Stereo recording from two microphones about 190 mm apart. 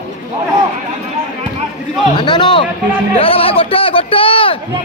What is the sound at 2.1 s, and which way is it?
Speech, 25° left (ahead or behind).